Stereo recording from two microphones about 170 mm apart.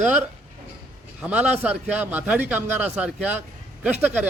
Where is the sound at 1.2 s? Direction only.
10° right (ahead or behind).